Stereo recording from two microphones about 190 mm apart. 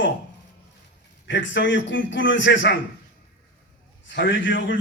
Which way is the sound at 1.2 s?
70° left (ahead or behind).